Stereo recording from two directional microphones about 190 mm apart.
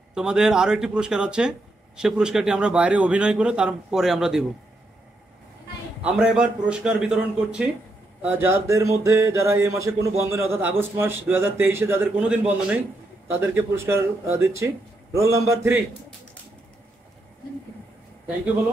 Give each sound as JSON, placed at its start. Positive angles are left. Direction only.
{"t": 0.1, "sound": "a man's voice", "side_deg": -5}
{"t": 6.0, "sound": "a man's voice", "side_deg": -5}